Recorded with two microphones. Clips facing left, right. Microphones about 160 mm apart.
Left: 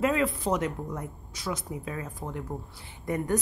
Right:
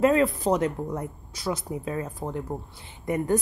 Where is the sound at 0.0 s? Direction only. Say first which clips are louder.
Right 5 dB; 35° right (ahead or behind).